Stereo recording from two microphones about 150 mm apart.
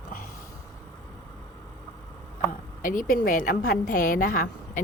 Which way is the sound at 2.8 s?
70° left (ahead or behind).